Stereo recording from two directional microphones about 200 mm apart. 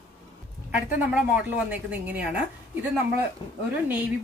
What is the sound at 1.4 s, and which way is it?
Speech, 10° right (ahead or behind).